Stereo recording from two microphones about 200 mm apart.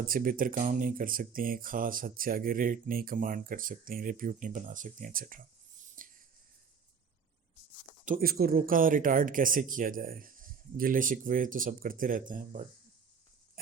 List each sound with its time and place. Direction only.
0.0 s speech: 45° right (ahead or behind)
6.0 s a sound: 45° right (ahead or behind)
8.0 s speech: 45° right (ahead or behind)